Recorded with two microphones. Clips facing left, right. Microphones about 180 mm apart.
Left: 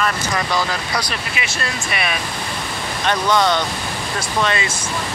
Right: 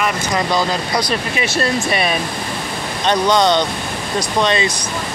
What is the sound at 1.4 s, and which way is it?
Speech, 35° right (ahead or behind).